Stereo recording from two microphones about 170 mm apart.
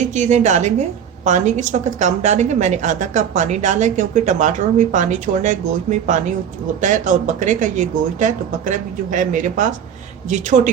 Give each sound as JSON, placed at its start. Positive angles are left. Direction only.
{"t": 0.1, "sound": "a woman's voice", "side_deg": -45}
{"t": 6.8, "sound": "a woman's voice", "side_deg": -50}